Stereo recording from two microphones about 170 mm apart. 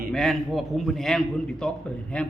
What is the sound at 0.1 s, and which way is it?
A man's voice, centre (ahead or behind).